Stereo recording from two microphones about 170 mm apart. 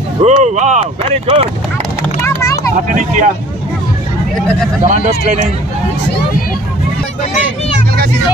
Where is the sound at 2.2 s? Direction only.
20° left (ahead or behind).